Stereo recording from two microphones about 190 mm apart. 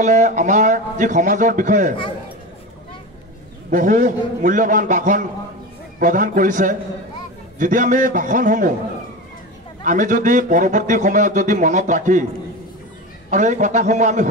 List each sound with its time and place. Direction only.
0.0 s a man's voice: 40° right (ahead or behind)
3.7 s a man's voice: 40° right (ahead or behind)
9.8 s a man's voice: 40° right (ahead or behind)
13.3 s a man's voice: 40° right (ahead or behind)